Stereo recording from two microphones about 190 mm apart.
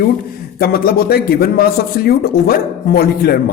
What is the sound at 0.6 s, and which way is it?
Speech, 50° left (ahead or behind).